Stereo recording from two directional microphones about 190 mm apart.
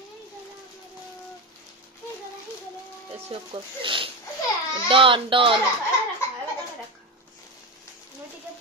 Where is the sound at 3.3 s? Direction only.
25° right (ahead or behind).